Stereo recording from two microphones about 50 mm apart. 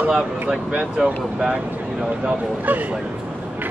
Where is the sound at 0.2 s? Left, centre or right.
Centre.